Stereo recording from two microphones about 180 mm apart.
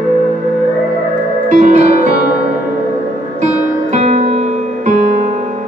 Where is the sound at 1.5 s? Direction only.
45° right (ahead or behind).